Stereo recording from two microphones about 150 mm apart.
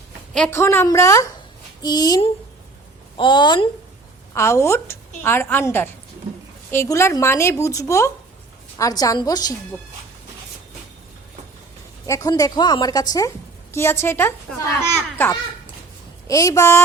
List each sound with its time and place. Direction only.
0.5 s a woman's voice: 15° left (ahead or behind); by 3.7 s 30° left (ahead or behind)
4.4 s a woman's voice: 20° left (ahead or behind)
12.0 s a woman's voice: 20° left (ahead or behind)